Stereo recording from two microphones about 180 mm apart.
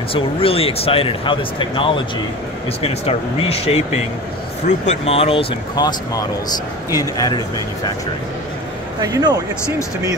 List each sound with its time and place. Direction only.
0.1 s a man's voice: 30° left (ahead or behind)
9.0 s speech: 20° right (ahead or behind)